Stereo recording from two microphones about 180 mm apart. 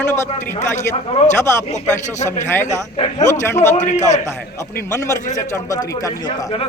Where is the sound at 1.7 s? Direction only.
40° left (ahead or behind).